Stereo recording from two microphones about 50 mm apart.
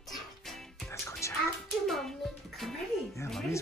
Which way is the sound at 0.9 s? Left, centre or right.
Left.